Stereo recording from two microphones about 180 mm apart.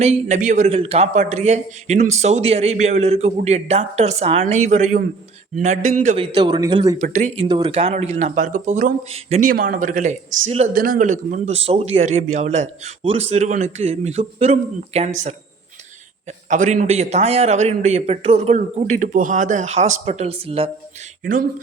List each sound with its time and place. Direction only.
0.0 s a man's voice: 40° right (ahead or behind)
6.1 s a man's voice: 25° right (ahead or behind)
7.0 s a man's voice: 40° right (ahead or behind)
7.4 s a man's voice: 25° right (ahead or behind); by 8.9 s 50° right (ahead or behind)
9.1 s a man's voice: 35° right (ahead or behind)
9.5 s a man's voice: 50° right (ahead or behind)
16.5 s a man's voice: 45° right (ahead or behind)